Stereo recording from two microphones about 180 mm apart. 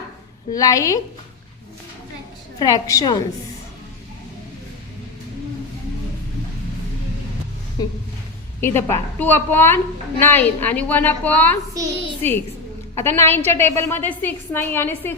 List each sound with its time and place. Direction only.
0.5 s a woman's voice: 20° left (ahead or behind)
2.6 s a woman's voice: 20° left (ahead or behind)
7.8 s a woman's voice: 20° left (ahead or behind)
11.7 s a woman's voice: 20° right (ahead or behind)
13.0 s a woman's voice: 15° left (ahead or behind)